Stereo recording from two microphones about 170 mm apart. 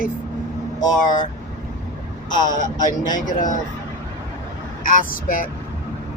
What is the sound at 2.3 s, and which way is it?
Speech, 50° left (ahead or behind).